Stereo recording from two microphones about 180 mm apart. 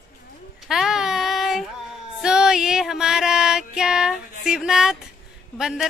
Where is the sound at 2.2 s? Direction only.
5° right (ahead or behind).